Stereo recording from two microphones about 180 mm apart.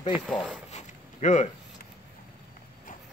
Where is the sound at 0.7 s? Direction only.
40° left (ahead or behind).